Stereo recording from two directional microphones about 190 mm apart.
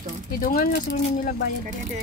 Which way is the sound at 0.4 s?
50° left (ahead or behind).